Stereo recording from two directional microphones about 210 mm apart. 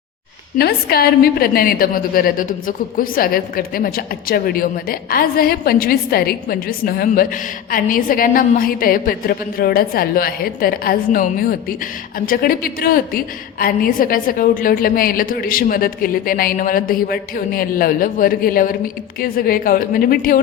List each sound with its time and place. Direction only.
0.6 s a woman's voice: 45° left (ahead or behind)